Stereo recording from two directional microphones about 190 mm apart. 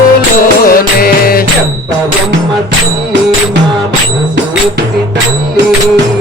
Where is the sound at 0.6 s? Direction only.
50° left (ahead or behind).